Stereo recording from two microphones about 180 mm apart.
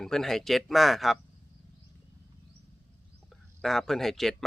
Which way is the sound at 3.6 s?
Centre (ahead or behind).